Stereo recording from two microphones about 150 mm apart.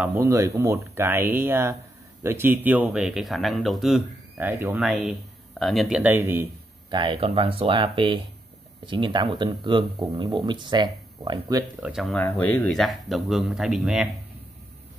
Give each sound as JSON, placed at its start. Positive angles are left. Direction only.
{"t": 0.0, "sound": "speech", "side_deg": -15}
{"t": 4.4, "sound": "speech", "side_deg": -15}
{"t": 4.7, "sound": "speech", "side_deg": -5}
{"t": 6.9, "sound": "speech", "side_deg": -35}
{"t": 11.8, "sound": "speech", "side_deg": 0}
{"t": 12.2, "sound": "speech", "side_deg": 15}
{"t": 12.7, "sound": "speech", "side_deg": 0}